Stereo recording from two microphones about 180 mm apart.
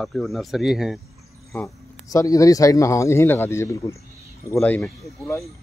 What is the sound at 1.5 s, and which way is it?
Speech, 15° left (ahead or behind).